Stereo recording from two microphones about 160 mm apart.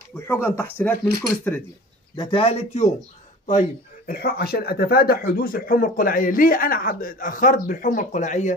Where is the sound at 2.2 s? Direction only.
35° left (ahead or behind).